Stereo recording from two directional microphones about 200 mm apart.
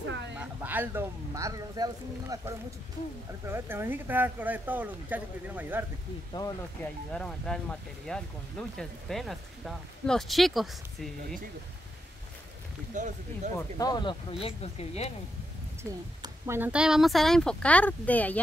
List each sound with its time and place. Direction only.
0.4 s speech: 10° right (ahead or behind)
6.3 s speech: 20° left (ahead or behind)
7.1 s speech: 5° left (ahead or behind)
12.9 s speech: 40° right (ahead or behind)
13.6 s speech: 20° left (ahead or behind)
15.8 s speech: 15° right (ahead or behind); by 18.4 s 5° left (ahead or behind)